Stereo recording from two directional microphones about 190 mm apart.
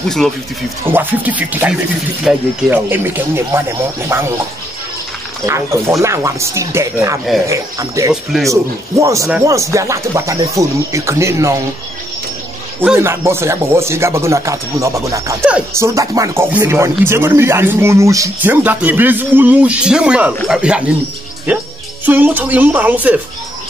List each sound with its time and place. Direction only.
0.2 s speech: centre (ahead or behind)
5.5 s speech: 15° right (ahead or behind)
8.1 s speech: centre (ahead or behind)
9.0 s speech: 15° right (ahead or behind)
12.8 s speech: 10° right (ahead or behind)
15.4 s speech: 5° right (ahead or behind)
15.9 s speech: 15° right (ahead or behind)